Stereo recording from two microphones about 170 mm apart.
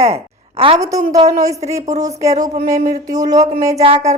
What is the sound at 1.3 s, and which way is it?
A woman's voice, 20° right (ahead or behind).